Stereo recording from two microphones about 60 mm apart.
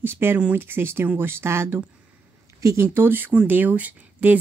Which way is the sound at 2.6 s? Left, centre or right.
Right.